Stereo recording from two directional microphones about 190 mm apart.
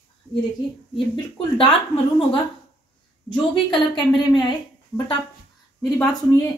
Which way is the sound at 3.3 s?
25° left (ahead or behind).